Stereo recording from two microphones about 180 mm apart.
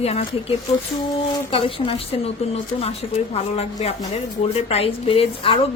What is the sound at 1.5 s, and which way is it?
Speech, 30° left (ahead or behind).